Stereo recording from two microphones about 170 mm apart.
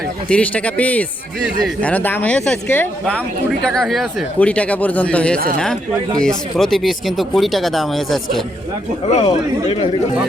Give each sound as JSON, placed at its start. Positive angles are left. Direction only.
{"t": 0.3, "sound": "speech", "side_deg": 5}
{"t": 9.0, "sound": "speech", "side_deg": 40}